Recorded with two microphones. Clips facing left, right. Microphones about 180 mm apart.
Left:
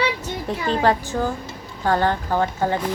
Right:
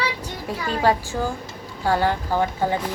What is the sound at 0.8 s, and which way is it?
A woman's voice, 10° right (ahead or behind).